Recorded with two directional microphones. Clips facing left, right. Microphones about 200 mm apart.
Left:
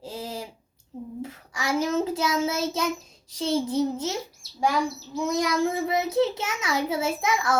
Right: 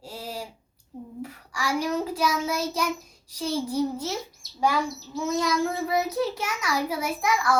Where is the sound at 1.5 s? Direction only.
20° left (ahead or behind).